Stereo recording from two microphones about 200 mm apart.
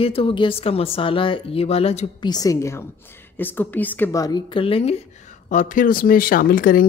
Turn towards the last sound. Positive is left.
turn(degrees=45)  # may be behind; listen again after turning